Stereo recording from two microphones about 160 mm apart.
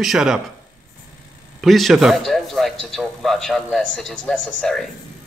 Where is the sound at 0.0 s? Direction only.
Centre (ahead or behind).